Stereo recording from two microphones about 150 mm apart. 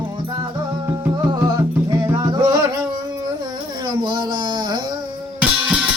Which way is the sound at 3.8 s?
30° right (ahead or behind).